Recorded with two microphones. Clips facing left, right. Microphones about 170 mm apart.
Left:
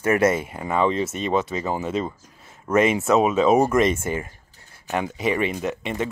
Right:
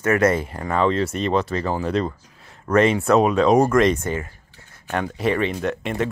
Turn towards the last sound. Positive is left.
turn(degrees=0)  # may be behind; listen again after turning